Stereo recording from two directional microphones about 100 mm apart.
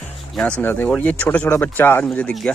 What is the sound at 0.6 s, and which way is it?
Speech, 20° left (ahead or behind).